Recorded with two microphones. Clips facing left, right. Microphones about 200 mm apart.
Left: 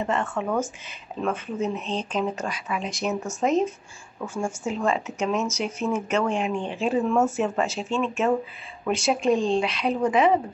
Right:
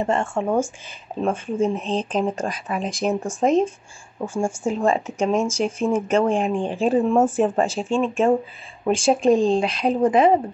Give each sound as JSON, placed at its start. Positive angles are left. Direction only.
{"t": 0.0, "sound": "speech", "side_deg": -30}
{"t": 2.7, "sound": "speech", "side_deg": -50}
{"t": 3.1, "sound": "speech", "side_deg": -30}
{"t": 8.9, "sound": "speech", "side_deg": -50}
{"t": 9.2, "sound": "speech", "side_deg": -35}